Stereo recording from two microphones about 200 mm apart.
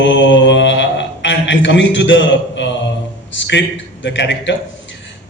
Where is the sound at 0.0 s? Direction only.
65° left (ahead or behind).